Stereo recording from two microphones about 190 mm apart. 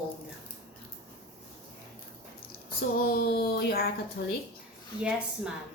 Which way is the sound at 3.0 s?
55° left (ahead or behind).